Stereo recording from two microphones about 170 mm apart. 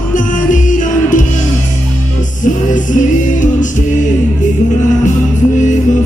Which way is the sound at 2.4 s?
50° left (ahead or behind).